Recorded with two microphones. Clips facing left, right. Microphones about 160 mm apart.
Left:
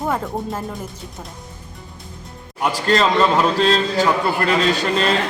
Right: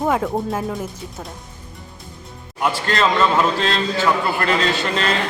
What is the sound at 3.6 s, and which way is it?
Speech, 40° left (ahead or behind).